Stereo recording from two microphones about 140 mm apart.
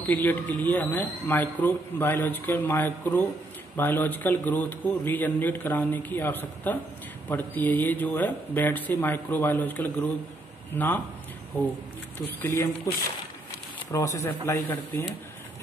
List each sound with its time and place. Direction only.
0.0 s speech: 10° left (ahead or behind)
13.9 s speech: 20° left (ahead or behind)